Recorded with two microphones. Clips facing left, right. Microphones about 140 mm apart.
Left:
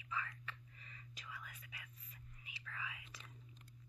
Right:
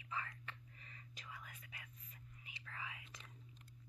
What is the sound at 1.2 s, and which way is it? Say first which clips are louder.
Whispering: left 1 dB; 40° right (ahead or behind).